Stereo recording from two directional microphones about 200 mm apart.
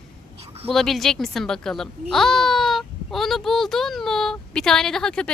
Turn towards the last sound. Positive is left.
turn(degrees=5)  # may be behind; listen again after turning